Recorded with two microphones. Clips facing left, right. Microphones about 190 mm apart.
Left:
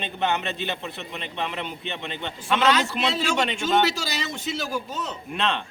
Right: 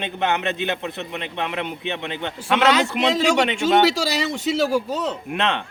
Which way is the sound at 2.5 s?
80° right.